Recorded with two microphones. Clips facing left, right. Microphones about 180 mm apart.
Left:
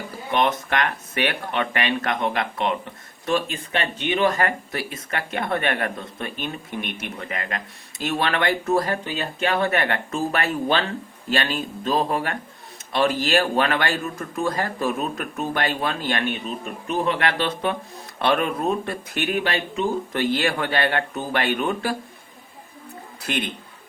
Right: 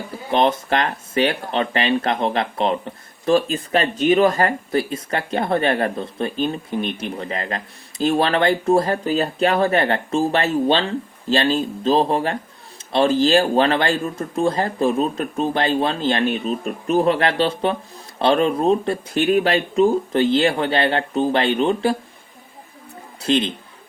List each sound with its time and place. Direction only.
0.3 s speech: 30° right (ahead or behind)
23.2 s speech: 25° right (ahead or behind)